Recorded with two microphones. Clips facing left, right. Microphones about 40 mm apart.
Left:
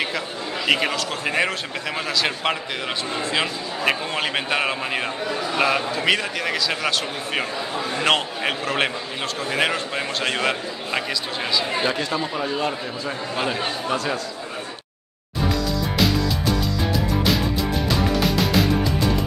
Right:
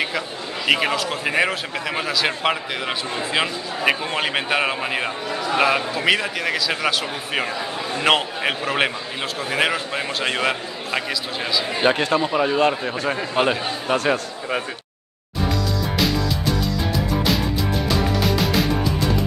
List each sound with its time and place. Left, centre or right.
0.7 s a man's voice: centre
11.8 s a man's voice: right
12.2 s a man's voice: right
12.5 s a man's voice: right
13.9 s a man's voice: right
16.0 s music: centre